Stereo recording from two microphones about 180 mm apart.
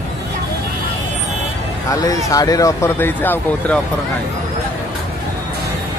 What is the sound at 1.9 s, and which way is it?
Speech, 20° left (ahead or behind).